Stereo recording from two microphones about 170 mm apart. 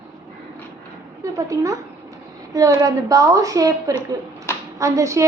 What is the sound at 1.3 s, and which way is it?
A woman's voice, 20° right (ahead or behind).